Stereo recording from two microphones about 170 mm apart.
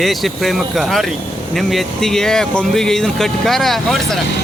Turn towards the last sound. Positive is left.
turn(degrees=0)  # may be behind; listen again after turning